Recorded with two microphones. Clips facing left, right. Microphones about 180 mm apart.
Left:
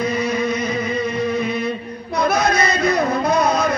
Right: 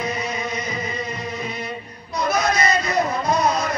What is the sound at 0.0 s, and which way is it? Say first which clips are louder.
Music: left 6 dB; 60° left (ahead or behind).